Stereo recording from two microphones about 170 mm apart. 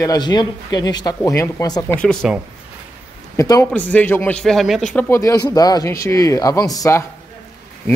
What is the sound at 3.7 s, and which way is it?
Speech, 10° left (ahead or behind).